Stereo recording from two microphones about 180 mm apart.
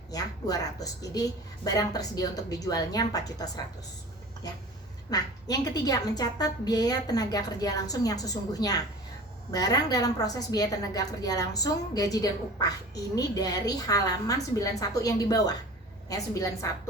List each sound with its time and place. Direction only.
0.1 s a woman's voice: 20° left (ahead or behind)
5.1 s a woman's voice: 20° left (ahead or behind)